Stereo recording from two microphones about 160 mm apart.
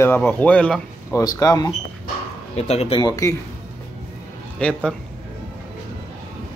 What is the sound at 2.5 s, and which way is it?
Speech, 40° left (ahead or behind).